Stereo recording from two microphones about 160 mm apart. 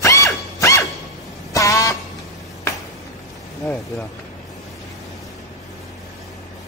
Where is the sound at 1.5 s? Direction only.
20° left (ahead or behind).